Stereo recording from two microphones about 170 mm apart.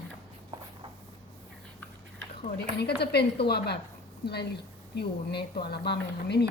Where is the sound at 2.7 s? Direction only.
75° left (ahead or behind).